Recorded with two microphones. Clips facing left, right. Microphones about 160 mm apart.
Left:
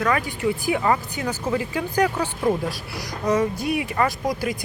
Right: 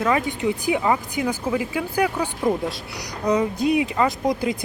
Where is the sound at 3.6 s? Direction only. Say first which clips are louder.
Right 3 dB; 20° right (ahead or behind).